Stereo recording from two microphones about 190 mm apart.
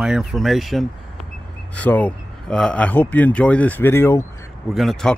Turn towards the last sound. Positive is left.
turn(degrees=0)  # may be behind; listen again after turning